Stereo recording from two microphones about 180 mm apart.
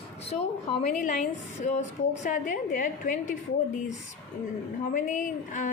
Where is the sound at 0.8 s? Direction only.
45° left (ahead or behind).